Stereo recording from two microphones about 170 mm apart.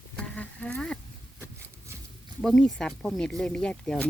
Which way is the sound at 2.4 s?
5° left (ahead or behind).